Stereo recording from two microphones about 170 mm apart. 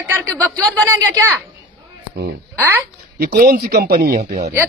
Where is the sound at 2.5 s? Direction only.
10° right (ahead or behind).